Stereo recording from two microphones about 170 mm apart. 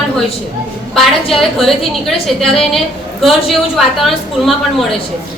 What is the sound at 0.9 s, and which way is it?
A woman's voice, centre (ahead or behind).